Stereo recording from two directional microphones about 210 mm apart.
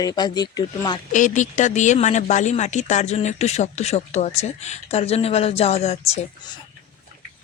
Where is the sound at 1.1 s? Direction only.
35° left (ahead or behind).